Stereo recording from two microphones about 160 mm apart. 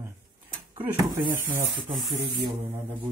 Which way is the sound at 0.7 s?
30° right (ahead or behind).